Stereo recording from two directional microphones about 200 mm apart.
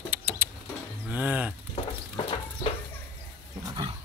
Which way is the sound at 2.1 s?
30° left (ahead or behind).